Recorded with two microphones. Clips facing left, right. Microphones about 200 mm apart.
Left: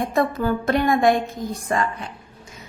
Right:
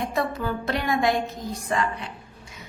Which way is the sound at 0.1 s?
50° left (ahead or behind).